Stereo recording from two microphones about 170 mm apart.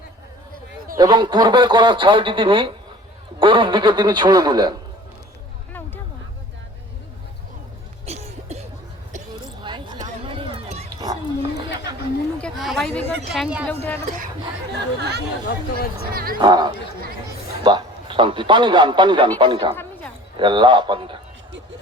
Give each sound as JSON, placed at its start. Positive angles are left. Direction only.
{"t": 0.9, "sound": "speech", "side_deg": -25}
{"t": 8.0, "sound": "cough", "side_deg": -40}
{"t": 9.6, "sound": "a sound", "side_deg": -25}
{"t": 10.2, "sound": "run", "side_deg": -30}
{"t": 10.8, "sound": "wild animals", "side_deg": -25}
{"t": 12.4, "sound": "speech", "side_deg": 0}
{"t": 13.7, "sound": "speech", "side_deg": 10}
{"t": 15.4, "sound": "speech", "side_deg": 65}
{"t": 16.1, "sound": "speech", "side_deg": -60}
{"t": 16.4, "sound": "a man's voice", "side_deg": -25}
{"t": 19.7, "sound": "a sound", "side_deg": 10}
{"t": 20.3, "sound": "speech", "side_deg": -25}